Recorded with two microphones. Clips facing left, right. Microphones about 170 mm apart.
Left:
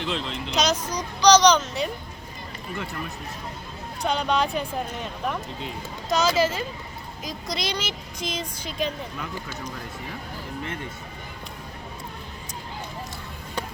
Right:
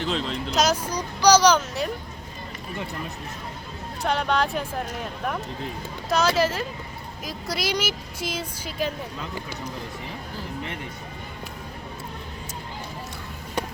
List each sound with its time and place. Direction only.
0.0 s speech: 45° right (ahead or behind)
0.5 s speech: 5° right (ahead or behind)
4.0 s speech: centre (ahead or behind)
6.1 s speech: centre (ahead or behind)